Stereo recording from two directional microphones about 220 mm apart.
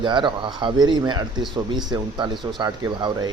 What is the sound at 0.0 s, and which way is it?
Speech, 20° right (ahead or behind).